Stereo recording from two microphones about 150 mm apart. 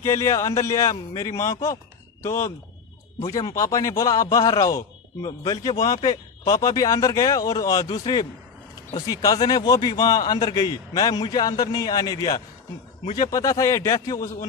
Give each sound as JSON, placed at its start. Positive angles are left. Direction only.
{"t": 0.0, "sound": "a man's voice", "side_deg": 20}